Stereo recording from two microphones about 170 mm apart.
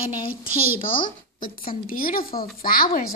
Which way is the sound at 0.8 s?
55° left (ahead or behind).